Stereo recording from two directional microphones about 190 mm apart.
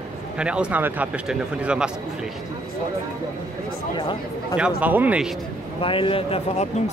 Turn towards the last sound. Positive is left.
turn(degrees=30)  # may be behind; listen again after turning